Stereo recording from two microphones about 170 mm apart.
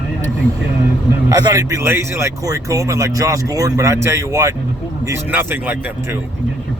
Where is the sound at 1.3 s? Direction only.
20° right (ahead or behind).